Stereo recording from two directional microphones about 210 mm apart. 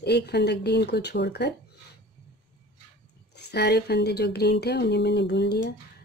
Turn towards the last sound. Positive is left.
turn(degrees=55)  # may be behind; listen again after turning